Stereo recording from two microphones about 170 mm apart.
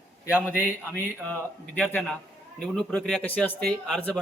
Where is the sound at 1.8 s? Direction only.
5° left (ahead or behind).